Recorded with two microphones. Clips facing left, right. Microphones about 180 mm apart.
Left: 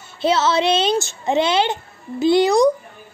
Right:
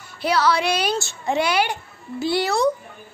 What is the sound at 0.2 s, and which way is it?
A child's voice, 25° left (ahead or behind).